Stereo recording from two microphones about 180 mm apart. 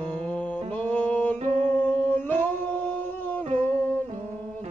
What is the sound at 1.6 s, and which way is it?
Singing, 10° left (ahead or behind).